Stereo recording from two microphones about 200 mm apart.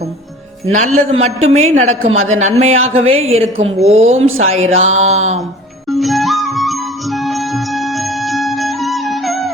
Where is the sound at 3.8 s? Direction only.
30° right (ahead or behind).